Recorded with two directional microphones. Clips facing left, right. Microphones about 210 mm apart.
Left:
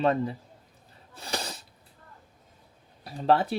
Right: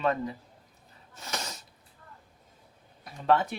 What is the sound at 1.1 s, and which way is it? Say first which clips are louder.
Sneeze: left 3 dB; 35° left (ahead or behind).